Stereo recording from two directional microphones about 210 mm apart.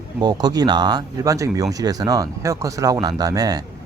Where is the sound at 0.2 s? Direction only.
20° right (ahead or behind).